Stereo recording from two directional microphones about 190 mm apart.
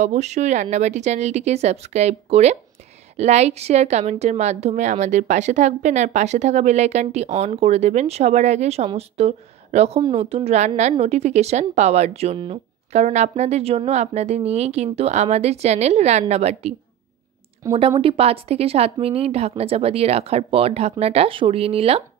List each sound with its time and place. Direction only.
0.0 s a woman's voice: 35° right (ahead or behind)
17.6 s speech: 15° right (ahead or behind)
18.0 s a woman's voice: 30° right (ahead or behind)